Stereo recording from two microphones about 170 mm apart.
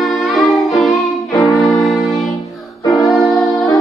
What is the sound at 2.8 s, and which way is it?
Music, 20° left (ahead or behind).